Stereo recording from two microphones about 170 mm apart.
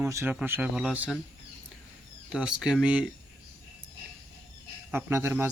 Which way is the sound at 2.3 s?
5° right (ahead or behind).